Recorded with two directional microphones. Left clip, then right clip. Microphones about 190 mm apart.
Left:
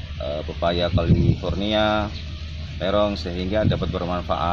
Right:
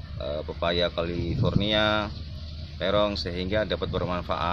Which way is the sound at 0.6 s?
5° right (ahead or behind).